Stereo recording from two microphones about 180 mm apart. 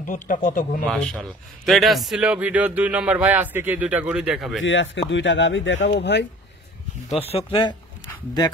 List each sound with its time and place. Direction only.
0.0 s speech: 45° left (ahead or behind)
0.8 s a man's voice: centre (ahead or behind)
4.6 s speech: 90° left
5.9 s speech: 75° left (ahead or behind)
7.2 s speech: 35° left (ahead or behind)